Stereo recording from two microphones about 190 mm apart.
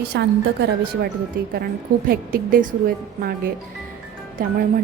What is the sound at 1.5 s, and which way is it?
A woman's voice, 50° right (ahead or behind).